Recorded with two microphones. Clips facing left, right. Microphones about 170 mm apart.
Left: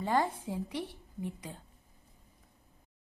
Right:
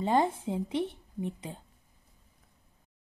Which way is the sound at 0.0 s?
20° right (ahead or behind).